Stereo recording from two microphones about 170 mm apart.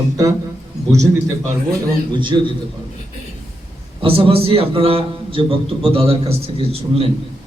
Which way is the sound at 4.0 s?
30° right (ahead or behind).